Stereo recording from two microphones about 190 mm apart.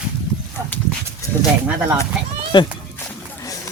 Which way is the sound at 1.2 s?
15° left (ahead or behind).